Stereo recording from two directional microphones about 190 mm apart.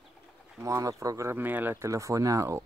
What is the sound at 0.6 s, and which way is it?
Speech, 15° right (ahead or behind).